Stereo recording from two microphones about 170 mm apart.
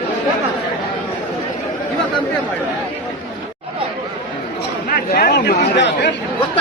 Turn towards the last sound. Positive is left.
turn(degrees=90)